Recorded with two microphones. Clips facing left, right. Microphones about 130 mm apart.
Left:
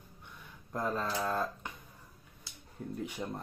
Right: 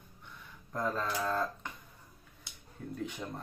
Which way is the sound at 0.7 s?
15° left (ahead or behind).